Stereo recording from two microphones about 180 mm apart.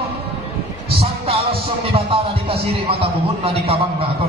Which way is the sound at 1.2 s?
35° right (ahead or behind).